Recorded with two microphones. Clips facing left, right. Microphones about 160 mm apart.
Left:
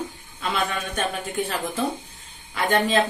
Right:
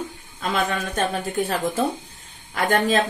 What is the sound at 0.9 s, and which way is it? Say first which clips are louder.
A woman's voice: right 4 dB; 40° right (ahead or behind).